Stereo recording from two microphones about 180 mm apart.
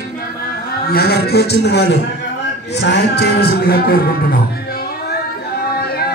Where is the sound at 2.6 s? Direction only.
70° left (ahead or behind).